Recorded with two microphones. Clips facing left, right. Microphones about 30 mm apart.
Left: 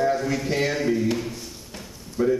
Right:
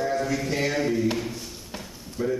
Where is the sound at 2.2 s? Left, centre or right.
Centre.